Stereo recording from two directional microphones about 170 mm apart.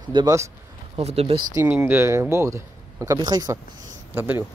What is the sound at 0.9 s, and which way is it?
Speech, 40° right (ahead or behind).